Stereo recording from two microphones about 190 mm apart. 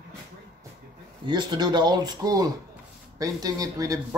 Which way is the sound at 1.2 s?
25° right (ahead or behind).